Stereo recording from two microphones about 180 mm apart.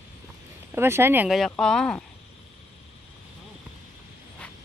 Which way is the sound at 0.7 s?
10° right (ahead or behind).